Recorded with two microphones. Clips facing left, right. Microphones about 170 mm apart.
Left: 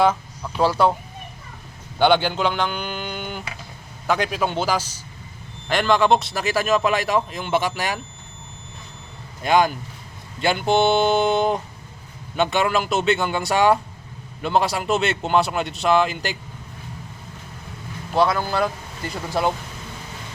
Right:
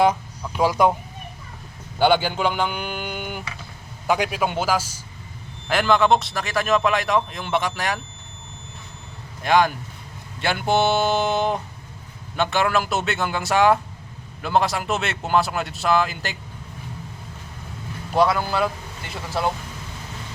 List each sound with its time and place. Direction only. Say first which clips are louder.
0.0 s speech: even; 10° right (ahead or behind)
2.0 s speech: left 1 dB; 5° right (ahead or behind)
9.4 s speech: even; centre (ahead or behind)
18.3 s speech: even; 10° right (ahead or behind)